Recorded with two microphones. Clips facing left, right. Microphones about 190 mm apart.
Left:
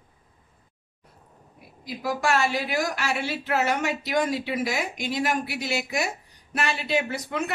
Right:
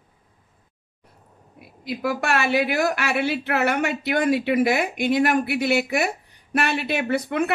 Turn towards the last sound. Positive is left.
turn(degrees=-60)  # may be behind; listen again after turning